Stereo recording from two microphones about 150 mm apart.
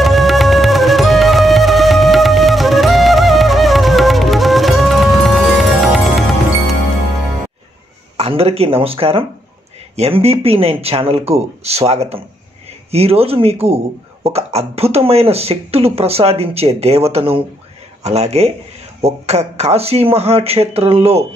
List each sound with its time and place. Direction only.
0.0 s music: centre (ahead or behind)
8.2 s speech: 40° right (ahead or behind)